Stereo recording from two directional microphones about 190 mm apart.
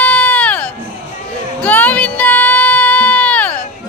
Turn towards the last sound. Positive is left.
turn(degrees=5)  # may be behind; listen again after turning